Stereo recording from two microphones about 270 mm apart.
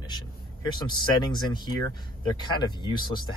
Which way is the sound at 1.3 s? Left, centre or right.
Centre.